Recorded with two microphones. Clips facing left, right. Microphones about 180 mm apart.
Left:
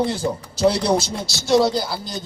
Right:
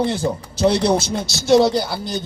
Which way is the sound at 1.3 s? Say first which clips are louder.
Right 3 dB; 25° right (ahead or behind).